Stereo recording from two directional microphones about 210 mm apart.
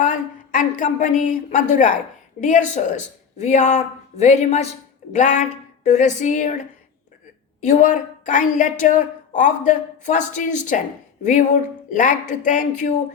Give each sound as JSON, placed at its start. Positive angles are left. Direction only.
{"t": 0.0, "sound": "a woman's voice", "side_deg": 40}
{"t": 7.6, "sound": "a woman's voice", "side_deg": 35}